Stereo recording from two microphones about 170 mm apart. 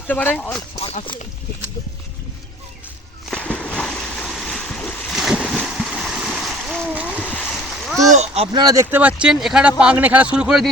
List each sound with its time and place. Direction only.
0.1 s speech: 10° left (ahead or behind)
0.8 s speech: 35° left (ahead or behind)
3.2 s a sound: 5° left (ahead or behind)
5.1 s splash: 5° right (ahead or behind)
7.2 s splash: 10° left (ahead or behind)
8.1 s a sound: 40° right (ahead or behind)
8.5 s speech: 20° right (ahead or behind); by 10.7 s 5° right (ahead or behind)